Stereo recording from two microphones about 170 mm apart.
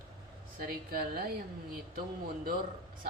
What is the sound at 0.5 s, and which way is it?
Speech, 60° right (ahead or behind).